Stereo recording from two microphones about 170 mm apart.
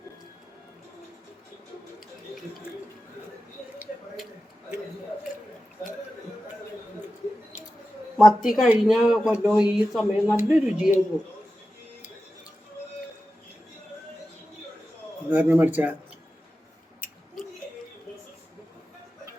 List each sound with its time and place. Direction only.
8.2 s speech: centre (ahead or behind)
15.3 s a man's voice: 10° right (ahead or behind)